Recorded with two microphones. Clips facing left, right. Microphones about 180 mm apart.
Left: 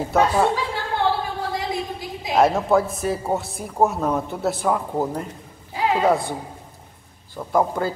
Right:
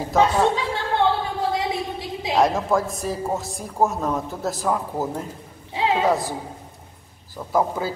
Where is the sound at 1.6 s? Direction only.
25° right (ahead or behind).